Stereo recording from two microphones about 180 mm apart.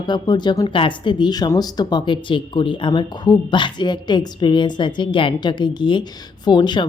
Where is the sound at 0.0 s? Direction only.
25° left (ahead or behind).